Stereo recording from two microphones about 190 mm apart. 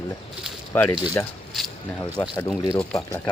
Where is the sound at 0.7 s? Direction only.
15° left (ahead or behind).